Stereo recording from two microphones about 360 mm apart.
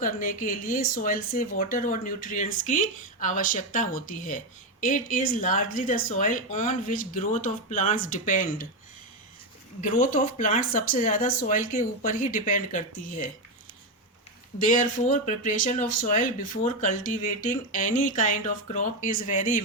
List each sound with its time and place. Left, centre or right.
0.0 s speech: left
9.8 s speech: left
14.7 s speech: left